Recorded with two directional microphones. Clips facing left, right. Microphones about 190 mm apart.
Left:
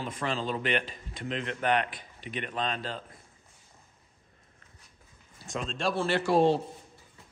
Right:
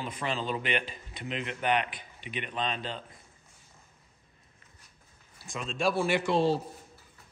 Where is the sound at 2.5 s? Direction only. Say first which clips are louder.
Even; centre (ahead or behind).